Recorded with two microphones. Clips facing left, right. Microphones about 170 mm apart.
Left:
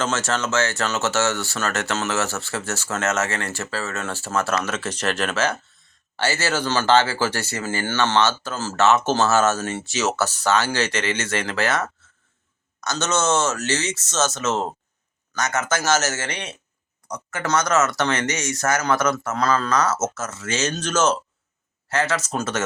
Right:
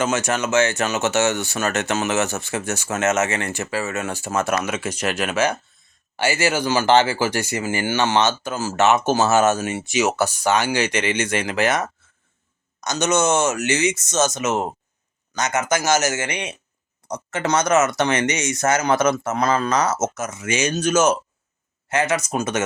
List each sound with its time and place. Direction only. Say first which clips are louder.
0.0 s speech: right 3 dB; 15° right (ahead or behind)